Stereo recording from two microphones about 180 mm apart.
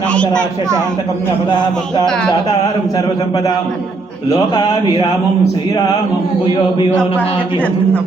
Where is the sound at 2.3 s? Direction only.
20° left (ahead or behind).